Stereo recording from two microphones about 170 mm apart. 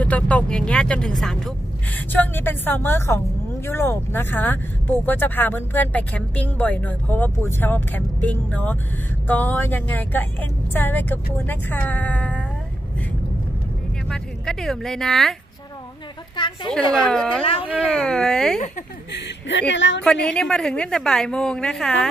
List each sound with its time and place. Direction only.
0.0 s a woman's voice: 10° left (ahead or behind)
14.0 s speech: 5° left (ahead or behind)
16.3 s a woman's voice: 25° left (ahead or behind)
16.9 s a woman's voice: 5° left (ahead or behind)
17.4 s speech: 30° left (ahead or behind)
17.8 s a woman's voice: 5° left (ahead or behind)
19.7 s a woman's voice: 90° left
20.2 s a woman's voice: 5° left (ahead or behind)